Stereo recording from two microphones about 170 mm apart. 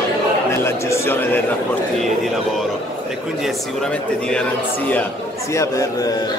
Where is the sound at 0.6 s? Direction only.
15° left (ahead or behind).